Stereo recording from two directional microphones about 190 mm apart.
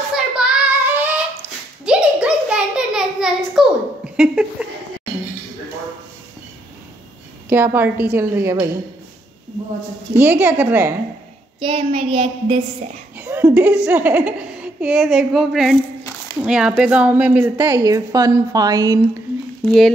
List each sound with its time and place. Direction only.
0.1 s child singing: 5° right (ahead or behind)
1.9 s a sound: 5° right (ahead or behind)
7.4 s a woman's voice: 10° right (ahead or behind)
10.1 s a woman's voice: 10° right (ahead or behind)
11.6 s a woman's voice: 25° right (ahead or behind)
13.2 s a sound: 10° right (ahead or behind)
13.8 s a woman's voice: 10° right (ahead or behind)
17.6 s a woman's voice: 20° right (ahead or behind)